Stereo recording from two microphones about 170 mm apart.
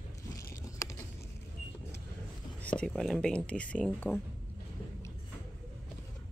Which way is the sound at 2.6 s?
5° left (ahead or behind).